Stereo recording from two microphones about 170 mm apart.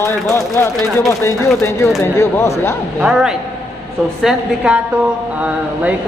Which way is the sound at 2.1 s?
15° left (ahead or behind).